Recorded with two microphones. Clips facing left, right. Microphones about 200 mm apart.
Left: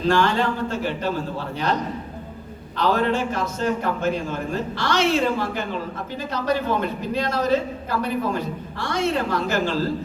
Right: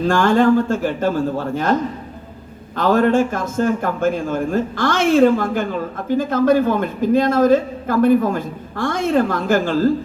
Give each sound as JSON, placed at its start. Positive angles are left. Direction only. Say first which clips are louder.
{"t": 0.1, "sound": "a man's voice", "louder": "right 7 dB", "side_deg": -50}
{"t": 2.7, "sound": "a man's voice", "louder": "right 6 dB", "side_deg": -50}